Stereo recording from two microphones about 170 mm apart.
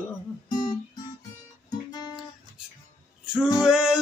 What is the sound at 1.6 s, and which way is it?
Guitar, 25° left (ahead or behind).